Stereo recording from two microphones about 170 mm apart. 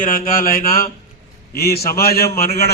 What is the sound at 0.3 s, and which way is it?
A man's voice, 55° left (ahead or behind).